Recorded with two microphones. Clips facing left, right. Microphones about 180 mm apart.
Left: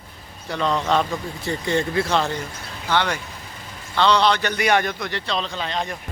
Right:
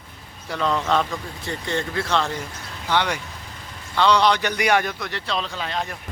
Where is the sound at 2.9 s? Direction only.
15° right (ahead or behind).